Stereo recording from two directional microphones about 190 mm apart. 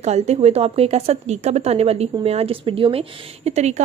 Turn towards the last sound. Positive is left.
turn(degrees=-35)  # may be behind; listen again after turning